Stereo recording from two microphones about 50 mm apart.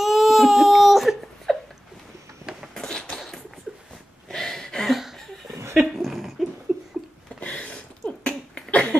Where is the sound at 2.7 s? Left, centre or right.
Centre.